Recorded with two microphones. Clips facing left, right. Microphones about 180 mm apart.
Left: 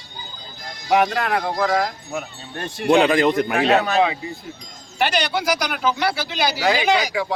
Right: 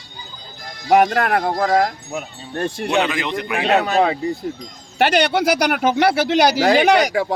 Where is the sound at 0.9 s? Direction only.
50° right (ahead or behind).